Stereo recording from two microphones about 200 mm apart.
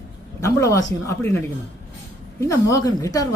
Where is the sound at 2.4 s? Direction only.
15° left (ahead or behind).